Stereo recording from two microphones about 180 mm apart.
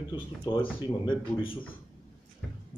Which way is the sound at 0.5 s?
25° left (ahead or behind).